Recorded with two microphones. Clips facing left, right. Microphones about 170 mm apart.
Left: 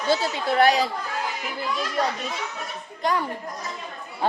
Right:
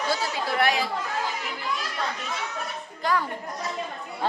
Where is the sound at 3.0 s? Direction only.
20° left (ahead or behind).